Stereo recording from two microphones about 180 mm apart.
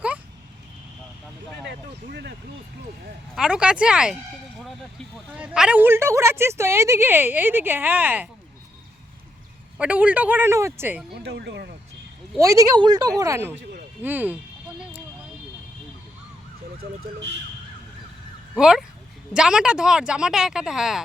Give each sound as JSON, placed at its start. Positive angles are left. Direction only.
{"t": 2.0, "sound": "speech", "side_deg": -70}
{"t": 3.3, "sound": "speech", "side_deg": -5}
{"t": 5.3, "sound": "speech", "side_deg": -5}
{"t": 9.7, "sound": "speech", "side_deg": -5}
{"t": 11.1, "sound": "speech", "side_deg": -65}
{"t": 12.4, "sound": "speech", "side_deg": -20}
{"t": 18.5, "sound": "speech", "side_deg": -5}